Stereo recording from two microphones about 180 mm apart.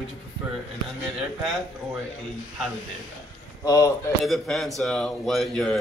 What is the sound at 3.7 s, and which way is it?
Speech, 15° left (ahead or behind).